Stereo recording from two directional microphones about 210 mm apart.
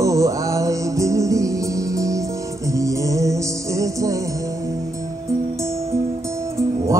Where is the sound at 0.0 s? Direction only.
15° right (ahead or behind).